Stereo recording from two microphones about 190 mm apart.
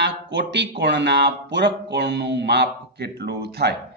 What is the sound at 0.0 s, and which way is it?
A man's voice, 65° right (ahead or behind).